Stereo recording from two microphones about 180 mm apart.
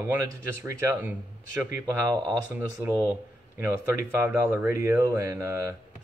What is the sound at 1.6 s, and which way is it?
Speech, 10° right (ahead or behind).